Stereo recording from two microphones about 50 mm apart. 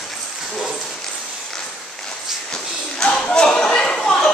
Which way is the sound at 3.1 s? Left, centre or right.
Centre.